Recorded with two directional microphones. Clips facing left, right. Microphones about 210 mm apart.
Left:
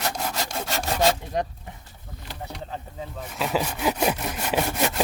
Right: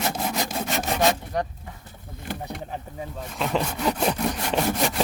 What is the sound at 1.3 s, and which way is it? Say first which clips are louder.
Speech: even; 20° left (ahead or behind).